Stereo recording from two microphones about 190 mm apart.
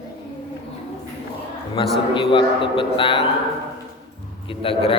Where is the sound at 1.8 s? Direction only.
30° left (ahead or behind).